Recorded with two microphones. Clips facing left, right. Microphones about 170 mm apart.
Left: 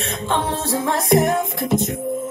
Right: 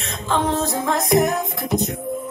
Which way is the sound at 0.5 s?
30° left (ahead or behind).